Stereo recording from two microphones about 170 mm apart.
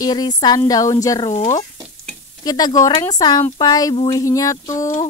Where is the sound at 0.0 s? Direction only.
25° left (ahead or behind).